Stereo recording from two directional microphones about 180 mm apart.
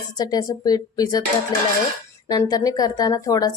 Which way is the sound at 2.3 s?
20° left (ahead or behind).